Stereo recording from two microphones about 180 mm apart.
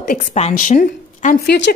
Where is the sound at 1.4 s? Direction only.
70° left (ahead or behind).